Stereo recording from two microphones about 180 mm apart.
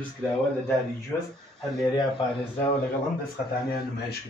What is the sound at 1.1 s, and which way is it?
Speech, 15° left (ahead or behind).